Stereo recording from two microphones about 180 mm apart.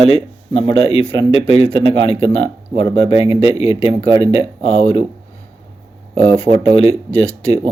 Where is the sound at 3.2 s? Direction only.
20° right (ahead or behind).